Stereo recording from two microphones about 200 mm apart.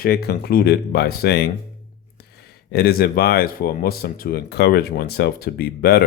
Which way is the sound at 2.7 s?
50° left (ahead or behind).